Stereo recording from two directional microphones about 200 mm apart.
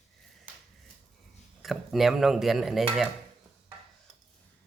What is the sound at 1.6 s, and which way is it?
Speech, centre (ahead or behind).